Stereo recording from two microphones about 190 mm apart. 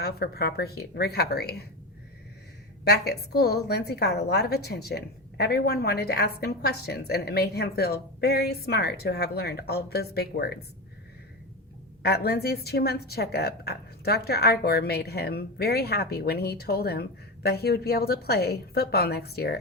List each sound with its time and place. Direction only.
0.0 s a woman's voice: 55° left (ahead or behind)
2.8 s a woman's voice: 60° left (ahead or behind)
12.0 s a woman's voice: 55° left (ahead or behind)